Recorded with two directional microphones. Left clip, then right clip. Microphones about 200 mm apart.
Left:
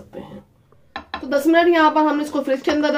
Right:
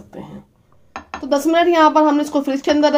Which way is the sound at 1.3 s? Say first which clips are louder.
Right 1 dB; 45° right (ahead or behind).